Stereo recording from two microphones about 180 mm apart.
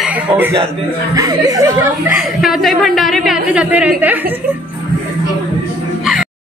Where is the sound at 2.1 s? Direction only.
Centre (ahead or behind).